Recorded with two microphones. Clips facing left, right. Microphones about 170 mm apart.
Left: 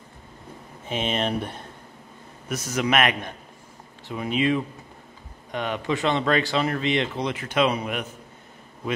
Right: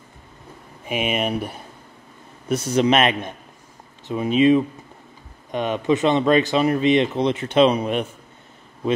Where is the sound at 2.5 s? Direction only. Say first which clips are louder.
Right 6 dB; 30° right (ahead or behind).